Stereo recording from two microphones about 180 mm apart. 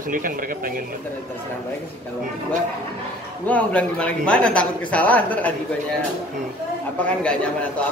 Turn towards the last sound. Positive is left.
turn(degrees=5)  # may be behind; listen again after turning